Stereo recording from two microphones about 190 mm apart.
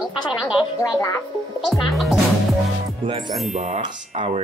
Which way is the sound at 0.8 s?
15° left (ahead or behind).